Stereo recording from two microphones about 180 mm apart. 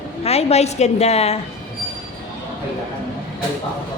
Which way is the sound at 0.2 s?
35° left (ahead or behind).